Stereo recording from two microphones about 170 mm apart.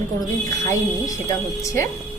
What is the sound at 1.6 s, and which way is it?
Speech, 20° left (ahead or behind).